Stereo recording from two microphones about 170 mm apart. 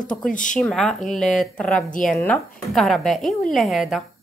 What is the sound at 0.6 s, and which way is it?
Speech, 5° left (ahead or behind).